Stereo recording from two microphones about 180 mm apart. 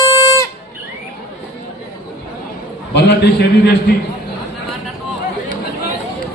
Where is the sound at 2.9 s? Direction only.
70° left (ahead or behind).